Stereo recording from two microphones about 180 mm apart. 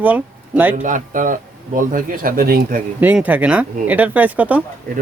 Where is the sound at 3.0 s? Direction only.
10° right (ahead or behind).